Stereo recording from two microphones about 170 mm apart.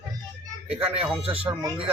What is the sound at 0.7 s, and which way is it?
Speech, 35° right (ahead or behind).